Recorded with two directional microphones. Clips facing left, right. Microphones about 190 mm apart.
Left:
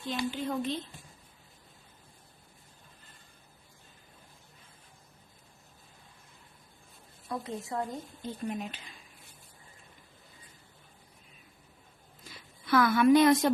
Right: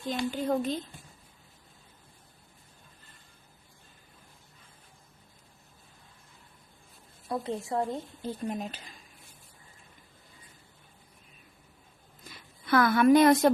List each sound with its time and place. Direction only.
0.0 s a woman's voice: 45° right (ahead or behind)
7.3 s speech: 30° right (ahead or behind)
12.6 s a woman's voice: 55° right (ahead or behind)